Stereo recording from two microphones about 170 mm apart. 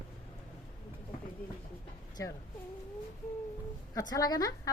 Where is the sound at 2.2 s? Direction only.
20° left (ahead or behind).